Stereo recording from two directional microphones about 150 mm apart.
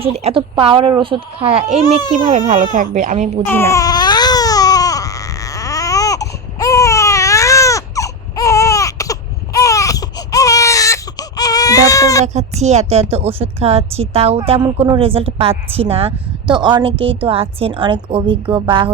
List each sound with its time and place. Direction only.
0.0 s a woman's voice: 45° right (ahead or behind)
2.2 s speech: 55° right (ahead or behind)
3.4 s baby cry: 15° left (ahead or behind)
12.2 s a child's voice: 50° right (ahead or behind)